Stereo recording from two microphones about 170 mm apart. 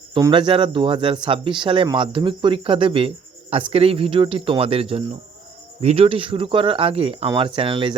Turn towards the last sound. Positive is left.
turn(degrees=-30)  # may be behind; listen again after turning